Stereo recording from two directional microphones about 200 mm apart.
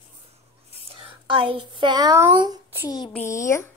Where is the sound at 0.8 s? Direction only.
25° right (ahead or behind).